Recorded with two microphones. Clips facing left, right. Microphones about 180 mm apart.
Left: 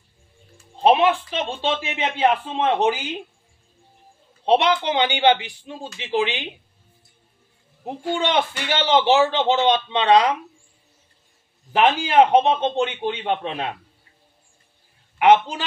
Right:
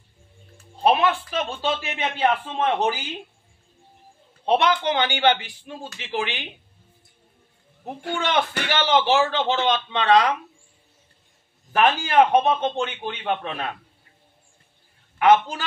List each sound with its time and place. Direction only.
0.9 s a man's voice: 25° left (ahead or behind)
4.5 s a man's voice: 20° left (ahead or behind)
7.8 s a man's voice: 20° left (ahead or behind)
11.7 s a man's voice: 15° left (ahead or behind)
15.1 s a man's voice: 20° left (ahead or behind)